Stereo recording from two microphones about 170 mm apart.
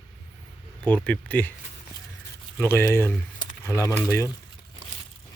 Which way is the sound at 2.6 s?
15° left (ahead or behind).